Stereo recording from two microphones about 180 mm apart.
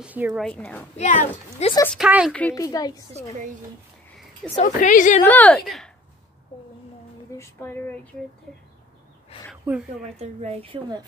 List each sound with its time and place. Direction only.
0.0 s speech: 10° right (ahead or behind)
0.4 s speech: 5° left (ahead or behind)
0.9 s speech: 40° left (ahead or behind)
2.0 s speech: 5° right (ahead or behind)
2.5 s a woman's voice: 20° left (ahead or behind)
4.6 s a woman's voice: 45° left (ahead or behind)
5.2 s speech: 10° left (ahead or behind)
7.3 s speech: 10° left (ahead or behind)
10.1 s speech: 35° right (ahead or behind)